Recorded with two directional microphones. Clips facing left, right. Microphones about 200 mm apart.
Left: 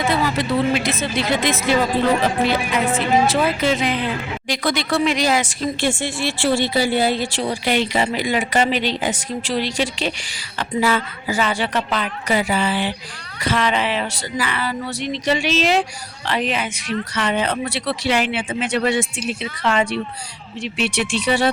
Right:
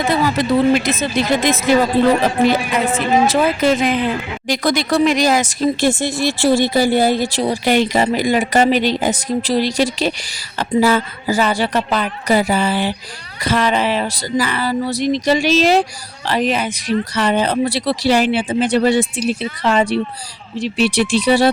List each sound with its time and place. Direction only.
0.3 s speech: 45° right (ahead or behind)
3.2 s speech: 45° right (ahead or behind)